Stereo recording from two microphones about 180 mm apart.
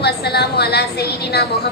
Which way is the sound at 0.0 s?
65° left (ahead or behind).